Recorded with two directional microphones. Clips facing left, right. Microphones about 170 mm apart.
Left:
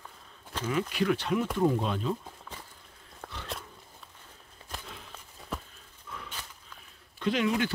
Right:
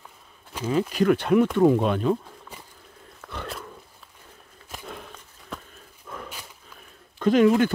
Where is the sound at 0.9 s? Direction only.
50° right (ahead or behind).